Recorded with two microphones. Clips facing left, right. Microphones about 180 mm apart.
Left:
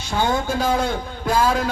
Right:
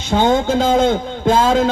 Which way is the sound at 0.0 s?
20° right (ahead or behind).